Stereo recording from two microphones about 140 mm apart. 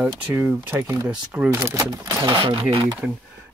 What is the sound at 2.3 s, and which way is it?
Speech, 35° right (ahead or behind).